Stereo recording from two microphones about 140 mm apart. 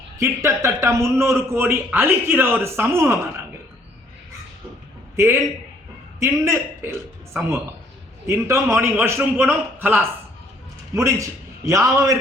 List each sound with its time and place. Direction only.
0.2 s a man's voice: 20° right (ahead or behind)
5.1 s a man's voice: 20° right (ahead or behind)
8.3 s a man's voice: 20° right (ahead or behind)